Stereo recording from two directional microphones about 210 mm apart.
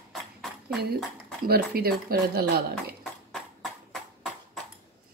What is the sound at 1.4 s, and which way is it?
A woman's voice, 45° right (ahead or behind).